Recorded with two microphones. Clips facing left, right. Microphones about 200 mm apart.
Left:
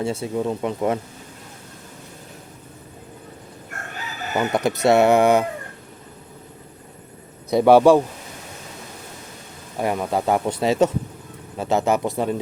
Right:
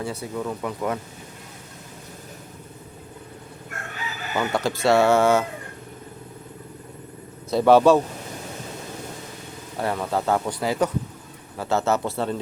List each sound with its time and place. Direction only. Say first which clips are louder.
0.0 s speech: left 5 dB; 25° left (ahead or behind)
4.4 s speech: left 3 dB; 20° left (ahead or behind)
7.5 s speech: left 2 dB; 15° left (ahead or behind)
9.7 s speech: left 3 dB; 15° left (ahead or behind)